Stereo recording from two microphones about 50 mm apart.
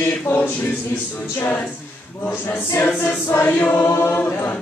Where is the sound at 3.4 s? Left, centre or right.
Left.